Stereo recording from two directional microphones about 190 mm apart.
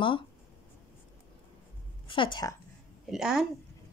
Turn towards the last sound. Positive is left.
turn(degrees=0)  # may be behind; listen again after turning